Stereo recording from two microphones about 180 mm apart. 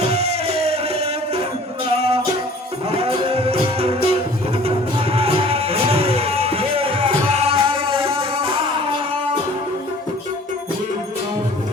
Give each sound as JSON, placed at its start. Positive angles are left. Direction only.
{"t": 0.0, "sound": "music", "side_deg": -35}